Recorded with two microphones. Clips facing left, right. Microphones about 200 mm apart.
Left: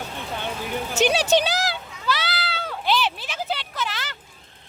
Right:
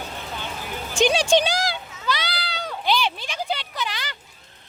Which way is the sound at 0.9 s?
5° left (ahead or behind).